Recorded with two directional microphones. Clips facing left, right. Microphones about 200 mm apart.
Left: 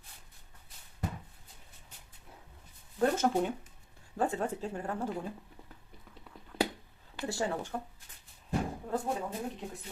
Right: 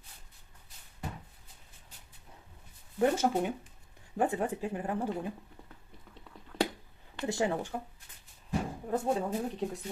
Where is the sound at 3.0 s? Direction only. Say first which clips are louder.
Right 1 dB; 10° right (ahead or behind).